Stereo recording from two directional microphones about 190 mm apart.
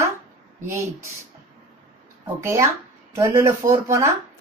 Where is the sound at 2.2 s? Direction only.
15° right (ahead or behind).